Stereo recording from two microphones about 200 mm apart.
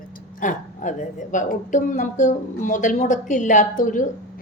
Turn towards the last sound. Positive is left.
turn(degrees=40)  # may be behind; listen again after turning